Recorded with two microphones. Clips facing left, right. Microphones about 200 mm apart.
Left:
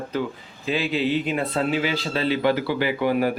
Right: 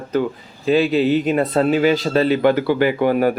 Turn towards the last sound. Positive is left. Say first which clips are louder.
# right 6 dB
turn(degrees=-50)  # may be behind; listen again after turning